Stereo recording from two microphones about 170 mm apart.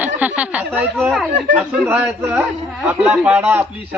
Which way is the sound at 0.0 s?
10° right (ahead or behind).